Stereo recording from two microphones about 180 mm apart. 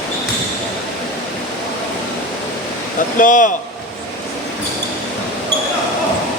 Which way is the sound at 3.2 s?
45° left (ahead or behind).